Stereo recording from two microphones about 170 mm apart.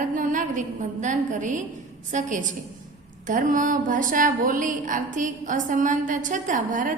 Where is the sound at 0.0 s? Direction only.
50° right (ahead or behind).